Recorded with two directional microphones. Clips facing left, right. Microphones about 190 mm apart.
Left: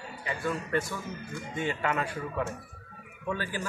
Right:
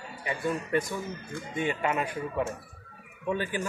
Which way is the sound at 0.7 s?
15° right (ahead or behind).